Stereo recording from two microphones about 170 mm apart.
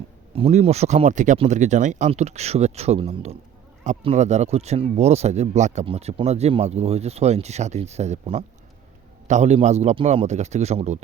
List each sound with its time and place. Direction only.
0.3 s speech: 35° right (ahead or behind)